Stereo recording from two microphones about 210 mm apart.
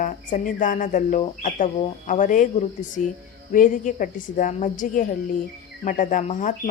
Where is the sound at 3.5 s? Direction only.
40° left (ahead or behind).